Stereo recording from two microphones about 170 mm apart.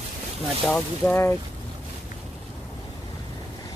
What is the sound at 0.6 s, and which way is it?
Speech, 5° left (ahead or behind).